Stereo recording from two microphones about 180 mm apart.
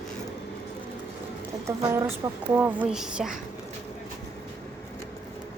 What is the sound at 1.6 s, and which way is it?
Speech, 15° right (ahead or behind).